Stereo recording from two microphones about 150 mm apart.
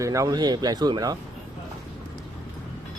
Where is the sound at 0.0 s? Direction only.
20° right (ahead or behind).